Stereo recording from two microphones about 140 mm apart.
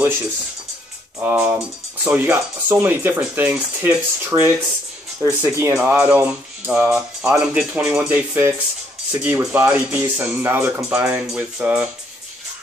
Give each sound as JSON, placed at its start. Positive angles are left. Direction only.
{"t": 1.2, "sound": "speech", "side_deg": -15}
{"t": 6.7, "sound": "speech", "side_deg": -5}